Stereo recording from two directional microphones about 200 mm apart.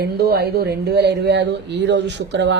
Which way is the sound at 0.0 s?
50° right (ahead or behind).